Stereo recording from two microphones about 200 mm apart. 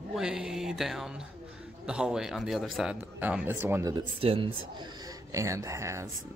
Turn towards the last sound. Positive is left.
turn(degrees=-15)  # may be behind; listen again after turning